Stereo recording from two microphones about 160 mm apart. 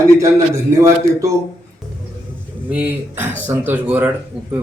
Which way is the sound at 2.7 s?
10° right (ahead or behind).